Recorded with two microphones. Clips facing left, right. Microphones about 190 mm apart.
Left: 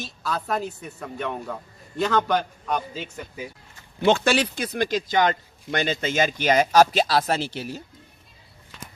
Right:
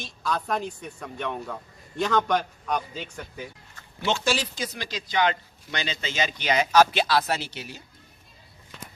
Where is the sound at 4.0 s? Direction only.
55° left (ahead or behind).